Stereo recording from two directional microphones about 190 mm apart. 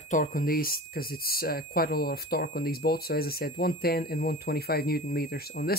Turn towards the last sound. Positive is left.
turn(degrees=55)  # may be behind; listen again after turning